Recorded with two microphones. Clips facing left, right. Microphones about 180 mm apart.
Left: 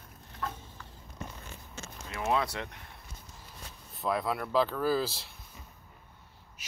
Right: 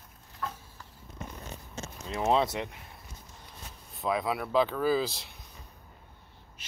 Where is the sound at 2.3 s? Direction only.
25° right (ahead or behind).